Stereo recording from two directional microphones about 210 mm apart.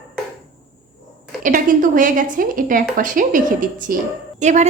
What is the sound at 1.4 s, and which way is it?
A woman's voice, 40° right (ahead or behind).